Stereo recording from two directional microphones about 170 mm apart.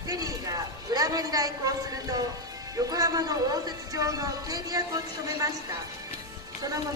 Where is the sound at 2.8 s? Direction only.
20° right (ahead or behind).